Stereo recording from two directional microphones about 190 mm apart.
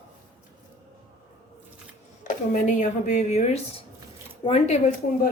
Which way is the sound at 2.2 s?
40° left (ahead or behind).